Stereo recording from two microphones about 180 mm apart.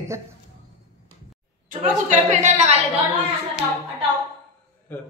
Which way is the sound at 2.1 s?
40° right (ahead or behind).